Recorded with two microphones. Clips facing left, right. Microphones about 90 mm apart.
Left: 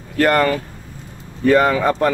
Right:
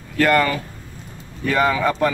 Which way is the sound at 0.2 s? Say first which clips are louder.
Left 2 dB; 40° left (ahead or behind).